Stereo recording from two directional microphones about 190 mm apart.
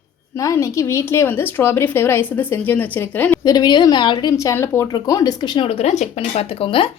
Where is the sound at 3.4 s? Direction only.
20° left (ahead or behind).